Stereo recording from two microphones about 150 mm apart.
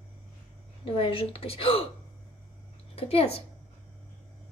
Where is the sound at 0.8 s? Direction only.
40° left (ahead or behind).